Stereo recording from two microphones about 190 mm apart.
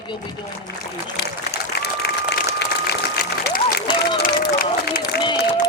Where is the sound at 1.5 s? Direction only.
60° left (ahead or behind).